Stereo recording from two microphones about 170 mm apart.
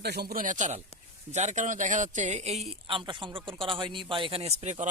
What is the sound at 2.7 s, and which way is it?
A man's voice, 30° right (ahead or behind).